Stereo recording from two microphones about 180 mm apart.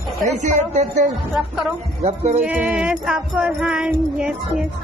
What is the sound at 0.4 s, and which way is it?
Speech, 40° right (ahead or behind).